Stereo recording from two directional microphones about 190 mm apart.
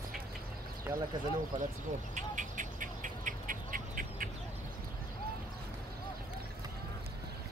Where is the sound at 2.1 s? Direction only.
40° right (ahead or behind).